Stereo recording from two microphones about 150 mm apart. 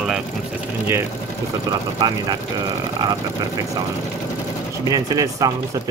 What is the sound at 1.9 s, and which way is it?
Speech, 30° right (ahead or behind).